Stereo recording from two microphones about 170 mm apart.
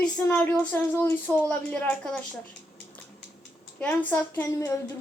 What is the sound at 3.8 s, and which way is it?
Speech, 10° left (ahead or behind).